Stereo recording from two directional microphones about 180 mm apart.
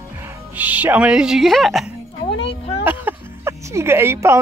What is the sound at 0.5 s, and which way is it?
Speech, 10° right (ahead or behind).